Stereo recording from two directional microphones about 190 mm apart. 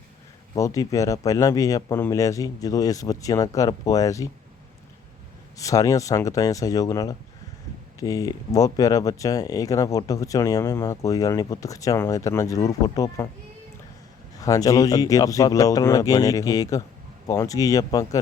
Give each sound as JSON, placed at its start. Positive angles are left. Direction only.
{"t": 0.5, "sound": "speech", "side_deg": 15}
{"t": 5.5, "sound": "speech", "side_deg": 15}
{"t": 14.4, "sound": "speech", "side_deg": 15}